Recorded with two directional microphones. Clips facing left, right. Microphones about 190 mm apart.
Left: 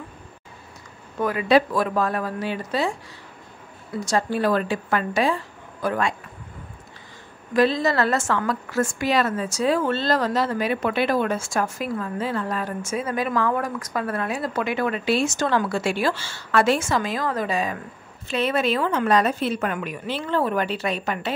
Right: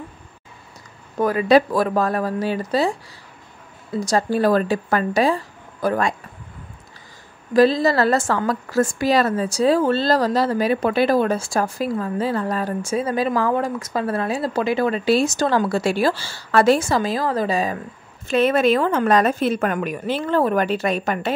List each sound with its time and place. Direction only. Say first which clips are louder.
1.2 s a woman's voice: right 3 dB; 40° right (ahead or behind)
4.0 s a woman's voice: right 4 dB; 35° right (ahead or behind)
7.5 s a woman's voice: right 4 dB; 35° right (ahead or behind)
18.3 s a woman's voice: right 6 dB; 50° right (ahead or behind)